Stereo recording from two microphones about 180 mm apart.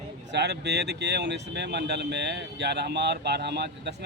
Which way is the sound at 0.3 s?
70° right (ahead or behind).